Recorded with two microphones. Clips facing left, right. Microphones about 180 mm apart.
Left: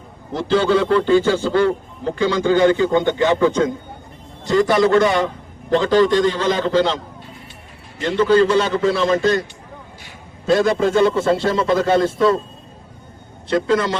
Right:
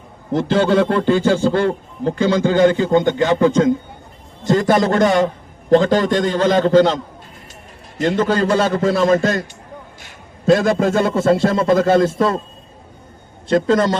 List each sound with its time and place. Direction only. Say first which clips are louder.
0.3 s a man's voice: right 2 dB; 50° right (ahead or behind)
13.5 s a man's voice: right 3 dB; 45° right (ahead or behind)